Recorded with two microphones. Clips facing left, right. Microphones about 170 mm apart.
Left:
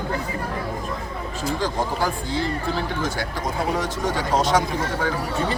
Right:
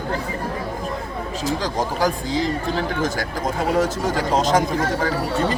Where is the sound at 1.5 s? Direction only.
40° right (ahead or behind).